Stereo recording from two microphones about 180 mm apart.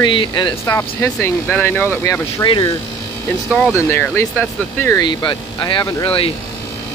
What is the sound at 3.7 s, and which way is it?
Speech, 10° left (ahead or behind).